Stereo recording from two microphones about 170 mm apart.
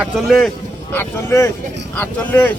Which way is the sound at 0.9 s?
15° left (ahead or behind).